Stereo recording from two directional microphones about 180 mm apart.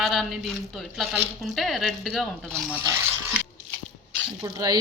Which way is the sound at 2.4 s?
15° right (ahead or behind).